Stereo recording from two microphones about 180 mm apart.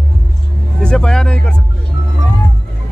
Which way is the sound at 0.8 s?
5° left (ahead or behind).